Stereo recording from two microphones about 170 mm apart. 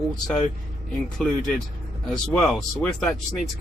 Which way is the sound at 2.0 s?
5° left (ahead or behind).